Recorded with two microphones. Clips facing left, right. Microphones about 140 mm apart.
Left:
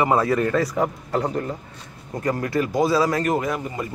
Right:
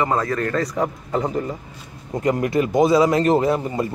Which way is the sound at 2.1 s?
20° right (ahead or behind).